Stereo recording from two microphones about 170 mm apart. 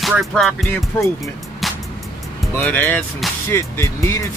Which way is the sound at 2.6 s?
10° left (ahead or behind).